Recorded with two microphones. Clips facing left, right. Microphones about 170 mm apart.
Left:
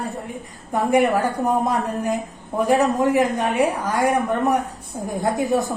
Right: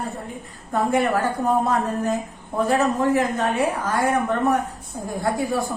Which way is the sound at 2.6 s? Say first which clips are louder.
Left 2 dB; 15° left (ahead or behind).